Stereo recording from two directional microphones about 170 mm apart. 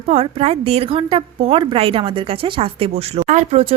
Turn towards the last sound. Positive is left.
turn(degrees=-40)  # may be behind; listen again after turning